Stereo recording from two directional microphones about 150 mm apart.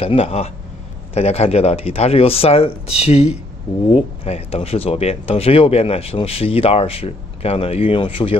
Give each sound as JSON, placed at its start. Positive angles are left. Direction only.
{"t": 0.0, "sound": "a man's voice", "side_deg": 40}